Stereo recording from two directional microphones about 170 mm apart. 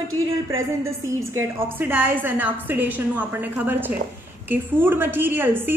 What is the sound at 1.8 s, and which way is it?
A woman's voice, 10° right (ahead or behind).